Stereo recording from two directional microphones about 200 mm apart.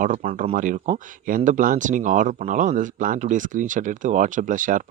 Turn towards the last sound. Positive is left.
turn(degrees=-40)  # may be behind; listen again after turning